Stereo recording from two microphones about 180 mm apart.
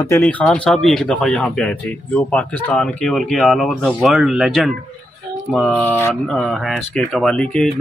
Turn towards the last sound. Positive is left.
turn(degrees=5)  # may be behind; listen again after turning